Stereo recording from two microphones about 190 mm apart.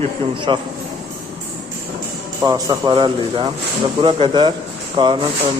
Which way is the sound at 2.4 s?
20° right (ahead or behind).